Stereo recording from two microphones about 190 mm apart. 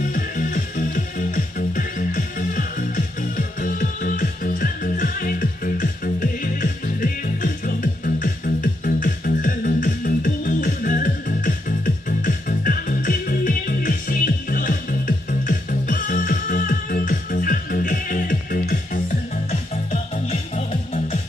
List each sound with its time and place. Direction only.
0.1 s music: 45° left (ahead or behind)
19.5 s music: 35° left (ahead or behind)